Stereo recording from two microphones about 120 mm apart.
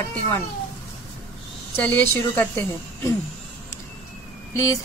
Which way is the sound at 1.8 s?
15° left (ahead or behind).